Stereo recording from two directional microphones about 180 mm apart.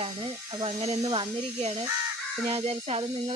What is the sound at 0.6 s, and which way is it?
Speech, 35° right (ahead or behind).